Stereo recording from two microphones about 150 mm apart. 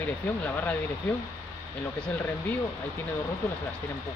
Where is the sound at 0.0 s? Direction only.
15° left (ahead or behind).